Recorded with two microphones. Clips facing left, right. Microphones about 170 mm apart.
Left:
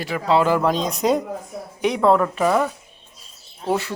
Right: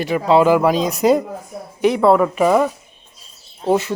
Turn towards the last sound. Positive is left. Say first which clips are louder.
# right 5 dB
turn(degrees=-20)  # may be behind; listen again after turning